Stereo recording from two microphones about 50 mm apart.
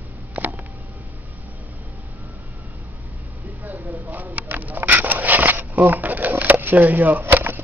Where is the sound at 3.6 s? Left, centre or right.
Right.